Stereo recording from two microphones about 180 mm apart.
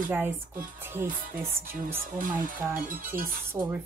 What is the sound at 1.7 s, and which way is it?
Speech, 50° right (ahead or behind).